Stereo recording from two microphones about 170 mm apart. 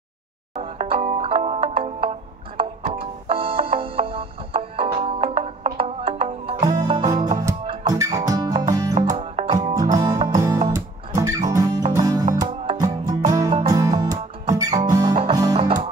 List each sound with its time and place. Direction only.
0.6 s music: 35° right (ahead or behind)
9.2 s music: 40° right (ahead or behind)
10.2 s music: 20° right (ahead or behind)
15.5 s music: 40° right (ahead or behind)